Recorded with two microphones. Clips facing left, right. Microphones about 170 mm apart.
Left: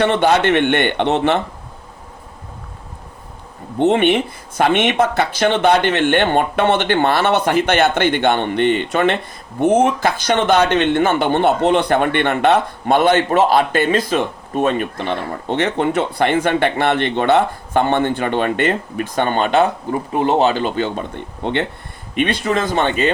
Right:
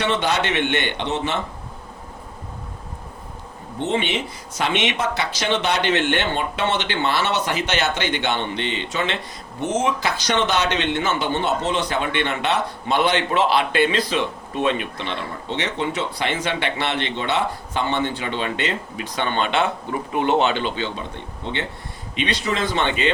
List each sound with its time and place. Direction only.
0.0 s speech: 55° left (ahead or behind)
3.8 s speech: 60° left (ahead or behind); by 23.1 s 45° left (ahead or behind)